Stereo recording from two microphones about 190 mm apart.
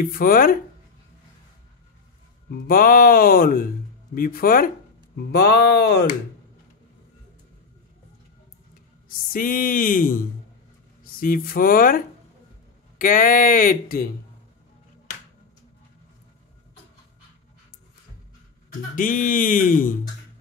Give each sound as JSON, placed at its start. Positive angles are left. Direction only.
{"t": 0.0, "sound": "speech", "side_deg": 50}
{"t": 2.5, "sound": "speech", "side_deg": 50}
{"t": 9.3, "sound": "speech", "side_deg": 45}
{"t": 13.0, "sound": "speech", "side_deg": 45}
{"t": 18.9, "sound": "speech", "side_deg": 45}